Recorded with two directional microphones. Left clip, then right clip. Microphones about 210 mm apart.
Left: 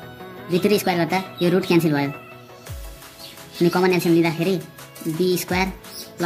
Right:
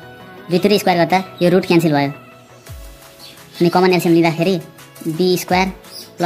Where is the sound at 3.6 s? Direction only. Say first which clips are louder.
Right 5 dB; 15° right (ahead or behind).